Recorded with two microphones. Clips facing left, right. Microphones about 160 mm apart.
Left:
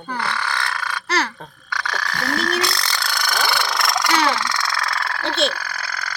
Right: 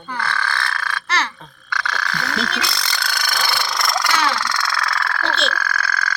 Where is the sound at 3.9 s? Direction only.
15° left (ahead or behind).